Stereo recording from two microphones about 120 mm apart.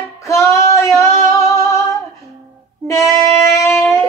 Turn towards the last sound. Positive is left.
turn(degrees=20)  # may be behind; listen again after turning